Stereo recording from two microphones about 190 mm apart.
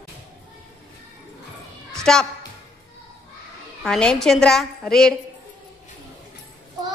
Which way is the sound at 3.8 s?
5° left (ahead or behind).